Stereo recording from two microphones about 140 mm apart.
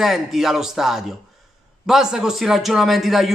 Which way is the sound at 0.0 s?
Centre (ahead or behind).